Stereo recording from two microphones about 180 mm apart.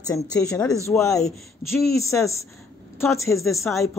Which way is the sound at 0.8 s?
15° left (ahead or behind).